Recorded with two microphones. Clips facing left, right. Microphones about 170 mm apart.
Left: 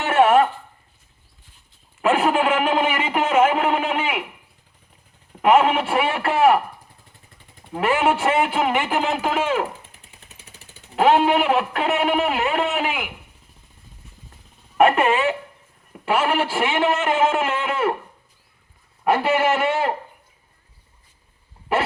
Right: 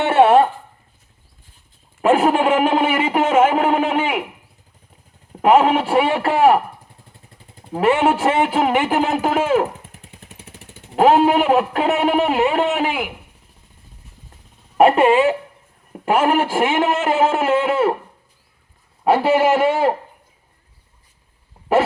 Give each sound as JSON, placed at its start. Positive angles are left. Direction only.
{"t": 0.1, "sound": "a sound", "side_deg": -30}
{"t": 2.0, "sound": "a man's voice", "side_deg": -40}
{"t": 5.4, "sound": "a man's voice", "side_deg": -40}
{"t": 7.7, "sound": "a man's voice", "side_deg": -30}
{"t": 10.1, "sound": "vehicle", "side_deg": -50}
{"t": 10.9, "sound": "a man's voice", "side_deg": -40}
{"t": 14.8, "sound": "a man's voice", "side_deg": -35}
{"t": 15.9, "sound": "a man's voice", "side_deg": -45}
{"t": 19.0, "sound": "a man's voice", "side_deg": -35}